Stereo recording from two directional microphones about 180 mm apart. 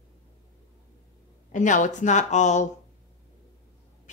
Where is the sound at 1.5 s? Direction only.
45° left (ahead or behind).